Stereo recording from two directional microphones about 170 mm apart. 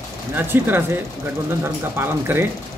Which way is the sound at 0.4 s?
10° right (ahead or behind).